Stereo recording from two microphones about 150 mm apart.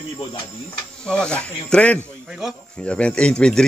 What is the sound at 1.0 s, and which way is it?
Speech, 5° left (ahead or behind).